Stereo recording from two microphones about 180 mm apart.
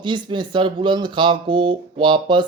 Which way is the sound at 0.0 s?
25° right (ahead or behind).